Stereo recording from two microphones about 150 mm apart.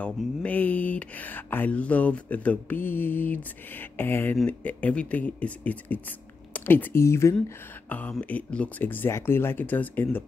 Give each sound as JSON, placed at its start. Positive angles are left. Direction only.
{"t": 0.0, "sound": "speech", "side_deg": 10}